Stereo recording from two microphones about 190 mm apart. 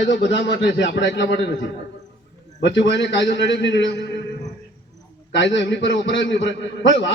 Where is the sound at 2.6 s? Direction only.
70° left (ahead or behind).